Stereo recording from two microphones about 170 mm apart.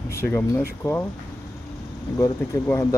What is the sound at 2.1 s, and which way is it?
Speech, 20° left (ahead or behind).